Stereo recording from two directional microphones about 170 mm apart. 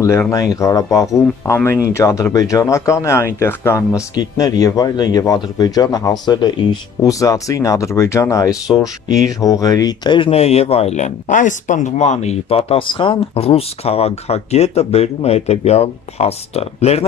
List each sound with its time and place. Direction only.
0.0 s speech: 15° left (ahead or behind); by 17.0 s 40° left (ahead or behind)